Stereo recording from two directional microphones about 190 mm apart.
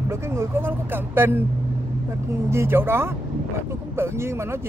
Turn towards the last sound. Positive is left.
turn(degrees=-15)  # may be behind; listen again after turning